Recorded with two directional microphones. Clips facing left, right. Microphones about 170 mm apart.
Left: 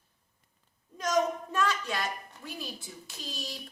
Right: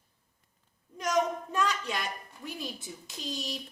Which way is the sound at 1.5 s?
20° right (ahead or behind).